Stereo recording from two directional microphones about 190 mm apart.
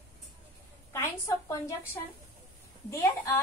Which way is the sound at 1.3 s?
15° left (ahead or behind).